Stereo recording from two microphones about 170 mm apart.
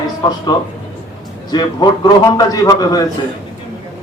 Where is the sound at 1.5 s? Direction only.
25° left (ahead or behind).